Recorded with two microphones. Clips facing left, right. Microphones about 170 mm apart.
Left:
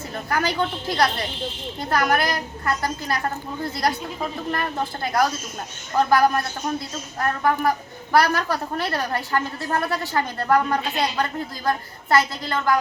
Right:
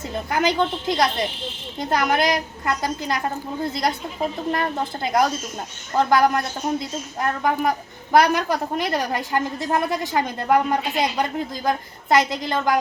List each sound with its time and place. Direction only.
0.1 s a woman's voice: 20° right (ahead or behind)